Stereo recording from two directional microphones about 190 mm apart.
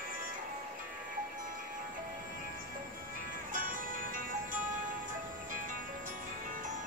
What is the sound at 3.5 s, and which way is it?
Music, 45° right (ahead or behind).